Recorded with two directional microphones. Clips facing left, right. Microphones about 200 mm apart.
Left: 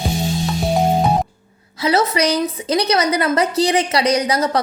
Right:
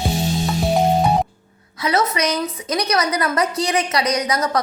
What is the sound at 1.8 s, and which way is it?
A woman's voice, 30° left (ahead or behind).